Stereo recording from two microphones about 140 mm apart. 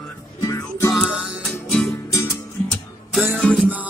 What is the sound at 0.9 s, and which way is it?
Music, 5° right (ahead or behind).